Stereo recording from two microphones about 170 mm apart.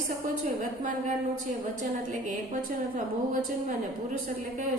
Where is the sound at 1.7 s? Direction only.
50° right (ahead or behind).